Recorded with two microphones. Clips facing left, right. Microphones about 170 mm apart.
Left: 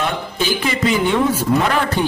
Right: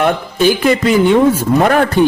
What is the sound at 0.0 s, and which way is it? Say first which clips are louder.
Speech: right 9 dB; 55° right (ahead or behind).